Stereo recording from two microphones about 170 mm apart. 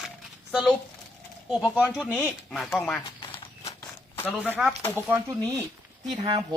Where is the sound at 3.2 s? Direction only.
30° left (ahead or behind).